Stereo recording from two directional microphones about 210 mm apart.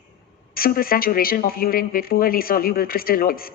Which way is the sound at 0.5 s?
45° left (ahead or behind).